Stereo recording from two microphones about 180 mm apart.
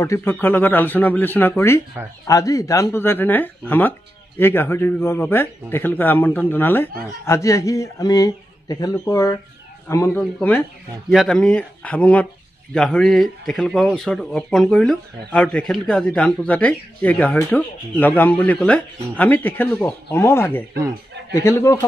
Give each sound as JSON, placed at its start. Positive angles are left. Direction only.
{"t": 0.0, "sound": "a man's voice", "side_deg": 15}